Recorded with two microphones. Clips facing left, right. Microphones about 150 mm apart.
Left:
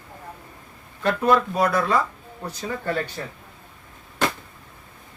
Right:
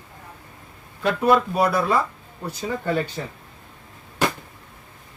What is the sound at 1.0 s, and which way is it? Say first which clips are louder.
Speech: right 1 dB; 10° right (ahead or behind).